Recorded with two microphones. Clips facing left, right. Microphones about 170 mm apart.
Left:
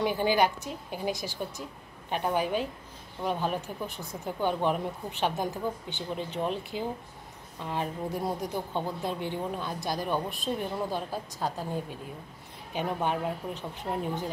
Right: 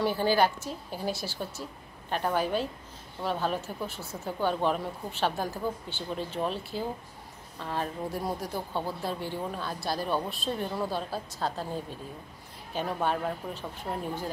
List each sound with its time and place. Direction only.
0.0 s speech: 15° left (ahead or behind)
12.7 s speech: 15° left (ahead or behind)